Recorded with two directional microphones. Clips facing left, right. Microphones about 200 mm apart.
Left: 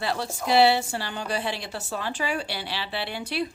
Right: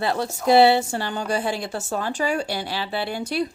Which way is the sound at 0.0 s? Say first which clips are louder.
Right 6 dB; 50° right (ahead or behind).